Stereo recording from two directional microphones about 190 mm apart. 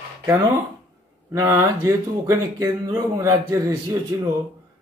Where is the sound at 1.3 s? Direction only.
15° right (ahead or behind).